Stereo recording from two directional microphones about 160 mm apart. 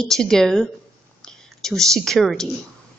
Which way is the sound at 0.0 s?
5° left (ahead or behind).